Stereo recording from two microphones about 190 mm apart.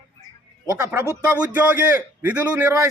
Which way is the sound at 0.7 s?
10° right (ahead or behind).